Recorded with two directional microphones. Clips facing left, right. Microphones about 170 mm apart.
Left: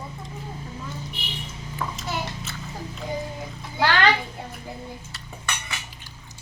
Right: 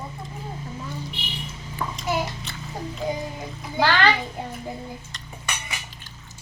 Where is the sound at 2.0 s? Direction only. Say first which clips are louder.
Right 4 dB; centre (ahead or behind).